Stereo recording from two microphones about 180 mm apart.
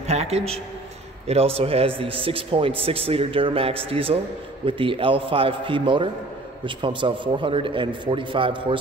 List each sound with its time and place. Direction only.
0.0 s a man's voice: 35° right (ahead or behind)